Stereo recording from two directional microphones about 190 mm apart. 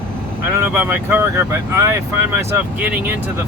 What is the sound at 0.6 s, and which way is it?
Speech, 10° right (ahead or behind).